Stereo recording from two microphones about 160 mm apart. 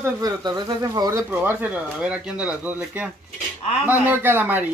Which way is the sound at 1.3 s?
10° right (ahead or behind).